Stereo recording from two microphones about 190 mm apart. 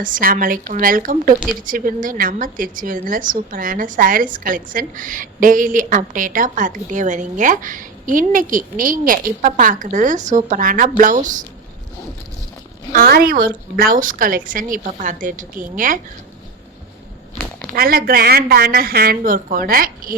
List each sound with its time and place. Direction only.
0.0 s a woman's voice: 45° right (ahead or behind)
12.9 s a woman's voice: 50° right (ahead or behind)
17.7 s a woman's voice: 50° right (ahead or behind)